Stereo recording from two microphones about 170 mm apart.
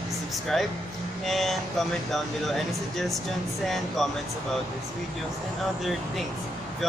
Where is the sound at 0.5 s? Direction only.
Centre (ahead or behind).